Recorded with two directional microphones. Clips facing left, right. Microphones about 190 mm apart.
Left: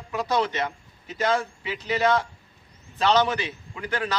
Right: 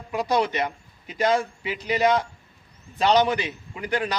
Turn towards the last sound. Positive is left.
turn(degrees=-15)  # may be behind; listen again after turning